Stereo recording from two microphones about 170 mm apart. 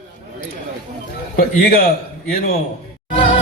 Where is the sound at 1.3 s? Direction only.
60° left (ahead or behind).